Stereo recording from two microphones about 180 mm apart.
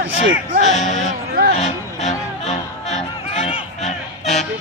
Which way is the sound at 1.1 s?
55° right (ahead or behind).